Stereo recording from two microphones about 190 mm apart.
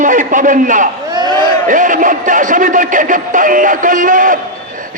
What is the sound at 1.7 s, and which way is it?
A man's voice, 45° right (ahead or behind).